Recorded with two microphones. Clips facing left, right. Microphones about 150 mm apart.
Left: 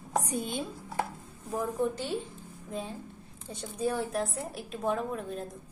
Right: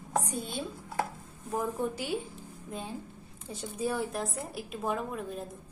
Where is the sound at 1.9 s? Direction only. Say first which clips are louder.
Even; 10° right (ahead or behind).